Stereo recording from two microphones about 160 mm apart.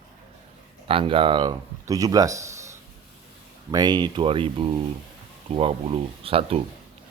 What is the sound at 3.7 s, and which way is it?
Speech, 25° right (ahead or behind).